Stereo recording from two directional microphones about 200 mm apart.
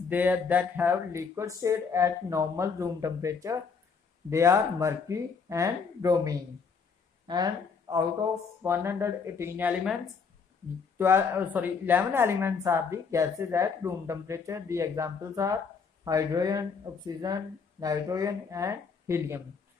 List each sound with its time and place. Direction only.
0.1 s a woman's voice: 10° right (ahead or behind)
11.0 s a woman's voice: 10° right (ahead or behind)